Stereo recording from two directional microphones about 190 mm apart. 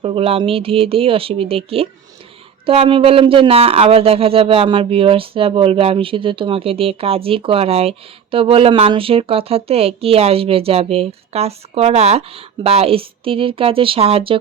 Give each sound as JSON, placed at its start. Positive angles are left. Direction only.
{"t": 0.0, "sound": "speech", "side_deg": -30}